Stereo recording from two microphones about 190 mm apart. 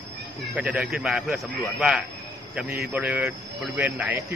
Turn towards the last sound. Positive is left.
turn(degrees=-10)  # may be behind; listen again after turning